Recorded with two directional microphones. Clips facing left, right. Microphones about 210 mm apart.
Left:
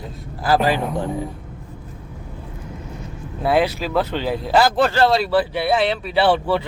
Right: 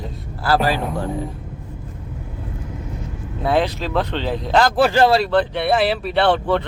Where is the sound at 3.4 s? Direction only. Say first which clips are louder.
Left 1 dB; 5° left (ahead or behind).